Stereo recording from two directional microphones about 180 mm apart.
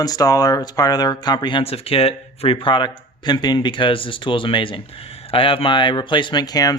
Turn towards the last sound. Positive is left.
turn(degrees=20)  # may be behind; listen again after turning